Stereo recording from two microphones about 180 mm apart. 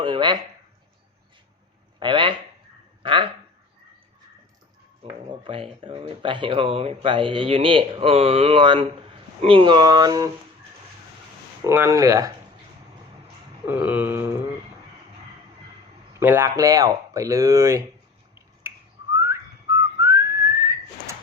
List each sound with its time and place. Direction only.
0.0 s a sound: 25° right (ahead or behind)
2.0 s speech: 25° right (ahead or behind)
5.3 s speech: 25° right (ahead or behind)
11.6 s speech: 15° right (ahead or behind)
13.7 s speech: 10° right (ahead or behind)
16.1 s speech: 15° right (ahead or behind)
20.0 s whistling: 15° right (ahead or behind)